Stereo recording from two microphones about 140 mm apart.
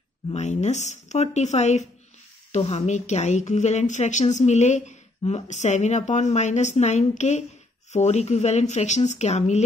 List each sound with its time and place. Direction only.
0.3 s a woman's voice: 55° left (ahead or behind)